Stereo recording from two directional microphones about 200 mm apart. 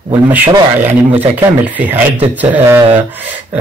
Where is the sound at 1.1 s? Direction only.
10° right (ahead or behind).